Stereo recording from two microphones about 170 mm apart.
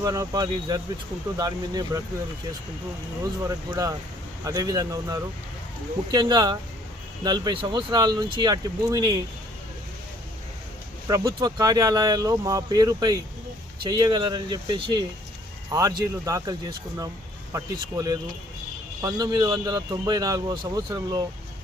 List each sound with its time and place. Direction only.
0.0 s speech: 20° right (ahead or behind)
3.4 s speech: 20° right (ahead or behind)
11.1 s speech: 20° right (ahead or behind)